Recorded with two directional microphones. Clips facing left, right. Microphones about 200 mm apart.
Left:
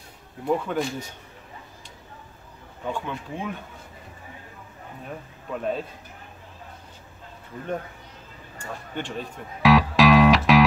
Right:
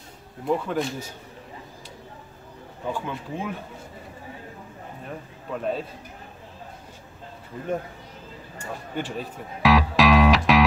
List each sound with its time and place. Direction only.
0.5 s speech: centre (ahead or behind)
2.9 s speech: centre (ahead or behind)
5.0 s speech: centre (ahead or behind)
8.9 s music: 5° right (ahead or behind)